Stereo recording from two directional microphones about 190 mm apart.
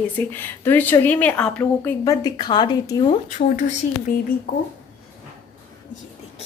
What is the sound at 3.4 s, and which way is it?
Speech, 45° left (ahead or behind).